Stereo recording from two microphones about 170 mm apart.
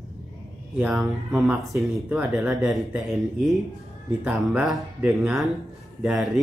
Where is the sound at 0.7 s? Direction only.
5° right (ahead or behind).